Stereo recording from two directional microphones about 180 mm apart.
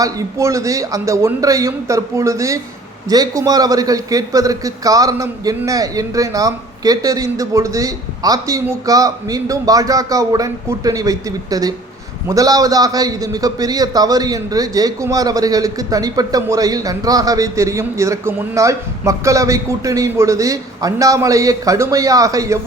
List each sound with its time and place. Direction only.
0.0 s a man's voice: 15° right (ahead or behind)